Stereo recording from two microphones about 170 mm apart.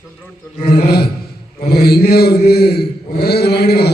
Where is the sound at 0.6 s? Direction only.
65° left (ahead or behind).